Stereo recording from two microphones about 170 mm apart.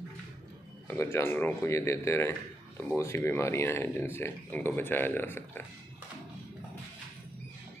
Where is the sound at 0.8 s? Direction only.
15° left (ahead or behind).